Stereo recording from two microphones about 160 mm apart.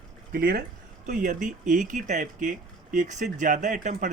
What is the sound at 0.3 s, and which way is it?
Speech, 65° right (ahead or behind).